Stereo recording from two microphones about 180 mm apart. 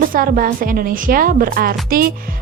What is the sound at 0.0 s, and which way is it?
A woman's voice, 50° right (ahead or behind).